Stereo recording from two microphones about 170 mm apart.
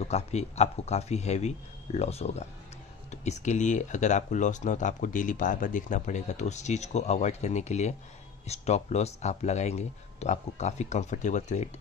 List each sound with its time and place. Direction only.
0.0 s speech: 40° left (ahead or behind)